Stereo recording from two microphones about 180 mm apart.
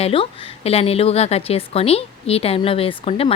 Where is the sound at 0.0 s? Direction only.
35° left (ahead or behind).